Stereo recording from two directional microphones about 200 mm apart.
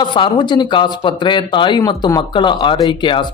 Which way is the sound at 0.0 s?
25° left (ahead or behind).